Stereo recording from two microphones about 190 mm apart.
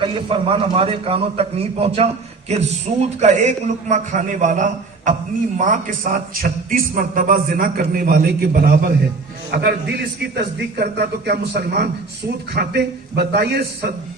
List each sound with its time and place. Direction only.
0.0 s a man's voice: 30° right (ahead or behind); by 13.9 s 55° right (ahead or behind)